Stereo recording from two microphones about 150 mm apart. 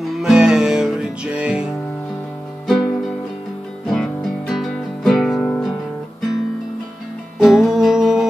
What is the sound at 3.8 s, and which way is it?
Music, centre (ahead or behind).